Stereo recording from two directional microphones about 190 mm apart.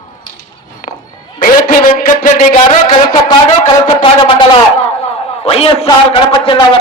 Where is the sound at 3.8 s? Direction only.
25° left (ahead or behind).